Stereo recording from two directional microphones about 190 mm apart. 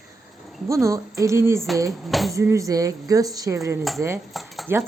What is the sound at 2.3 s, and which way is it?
Speech, 15° right (ahead or behind).